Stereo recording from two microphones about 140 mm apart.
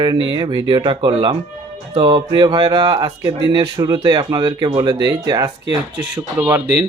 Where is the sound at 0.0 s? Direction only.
30° right (ahead or behind).